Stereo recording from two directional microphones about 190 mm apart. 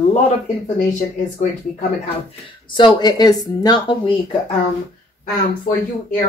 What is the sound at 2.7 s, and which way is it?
Speech, 20° left (ahead or behind).